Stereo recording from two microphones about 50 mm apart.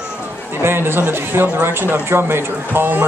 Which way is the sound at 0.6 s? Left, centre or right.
Right.